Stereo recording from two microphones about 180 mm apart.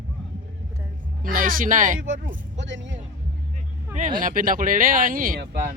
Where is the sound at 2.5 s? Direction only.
90° right.